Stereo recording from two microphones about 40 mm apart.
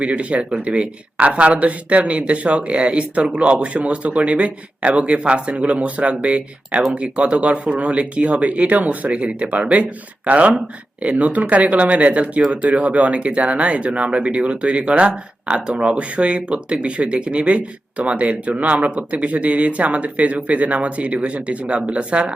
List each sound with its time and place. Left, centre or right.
0.0 s speech: right